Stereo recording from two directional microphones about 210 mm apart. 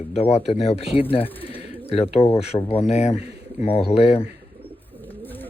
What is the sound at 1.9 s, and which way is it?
Speech, 30° left (ahead or behind).